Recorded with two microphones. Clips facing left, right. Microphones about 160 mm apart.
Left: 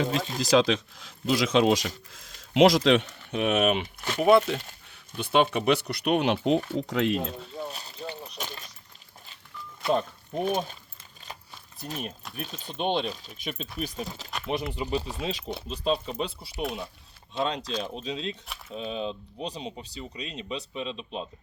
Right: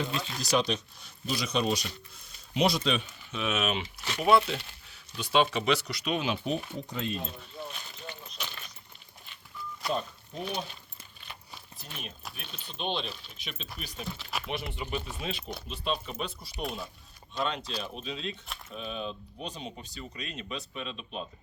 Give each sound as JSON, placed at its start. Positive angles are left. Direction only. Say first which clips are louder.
{"t": 0.3, "sound": "speech", "louder": "left 6 dB", "side_deg": 90}
{"t": 7.5, "sound": "a sound", "louder": "left 5 dB", "side_deg": 40}
{"t": 9.9, "sound": "speech", "louder": "left 8 dB", "side_deg": 50}
{"t": 11.9, "sound": "speech", "louder": "left 8 dB", "side_deg": 40}
{"t": 14.3, "sound": "speech", "louder": "left 2 dB", "side_deg": -5}
{"t": 14.5, "sound": "speech", "louder": "left 7 dB", "side_deg": 40}
{"t": 16.6, "sound": "speech", "louder": "left 4 dB", "side_deg": 0}
{"t": 17.3, "sound": "speech", "louder": "left 4 dB", "side_deg": 25}